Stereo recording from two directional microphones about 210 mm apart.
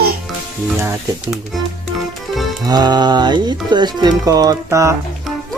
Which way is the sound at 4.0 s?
20° right (ahead or behind).